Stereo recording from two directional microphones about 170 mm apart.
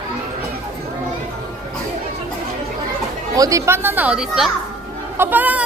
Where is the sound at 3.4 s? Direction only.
20° right (ahead or behind).